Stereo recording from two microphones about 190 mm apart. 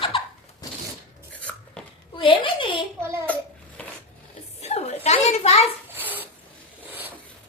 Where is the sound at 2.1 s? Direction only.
25° left (ahead or behind).